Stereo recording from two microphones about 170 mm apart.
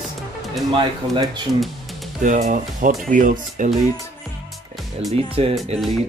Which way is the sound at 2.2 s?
45° right (ahead or behind).